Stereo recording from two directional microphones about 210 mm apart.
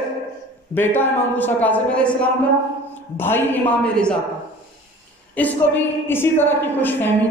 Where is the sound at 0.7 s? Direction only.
10° left (ahead or behind).